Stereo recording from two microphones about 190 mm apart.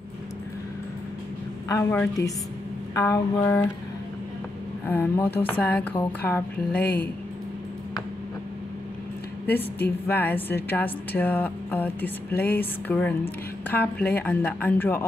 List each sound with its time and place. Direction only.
1.7 s a woman's voice: 15° left (ahead or behind)
4.8 s a woman's voice: 10° left (ahead or behind)
6.8 s speech: 55° left (ahead or behind)
9.5 s a woman's voice: 10° left (ahead or behind)